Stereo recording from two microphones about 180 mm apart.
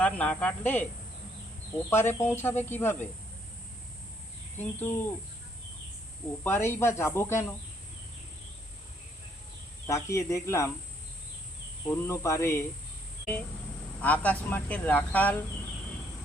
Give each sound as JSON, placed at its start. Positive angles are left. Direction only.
{"t": 0.0, "sound": "speech", "side_deg": 5}
{"t": 1.9, "sound": "speech", "side_deg": 15}
{"t": 4.5, "sound": "speech", "side_deg": 10}
{"t": 6.4, "sound": "speech", "side_deg": 15}
{"t": 9.8, "sound": "speech", "side_deg": 15}
{"t": 11.9, "sound": "speech", "side_deg": 15}
{"t": 14.0, "sound": "speech", "side_deg": 10}